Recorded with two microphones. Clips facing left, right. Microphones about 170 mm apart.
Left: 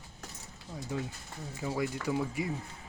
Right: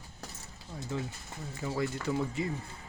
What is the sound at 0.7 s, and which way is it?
Speech, 10° left (ahead or behind).